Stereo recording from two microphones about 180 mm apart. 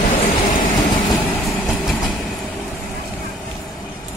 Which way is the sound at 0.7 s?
20° left (ahead or behind).